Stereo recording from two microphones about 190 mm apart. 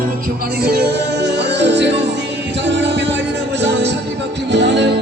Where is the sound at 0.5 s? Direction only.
55° right (ahead or behind).